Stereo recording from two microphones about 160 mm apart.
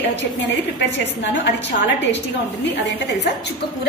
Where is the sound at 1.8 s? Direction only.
90° left.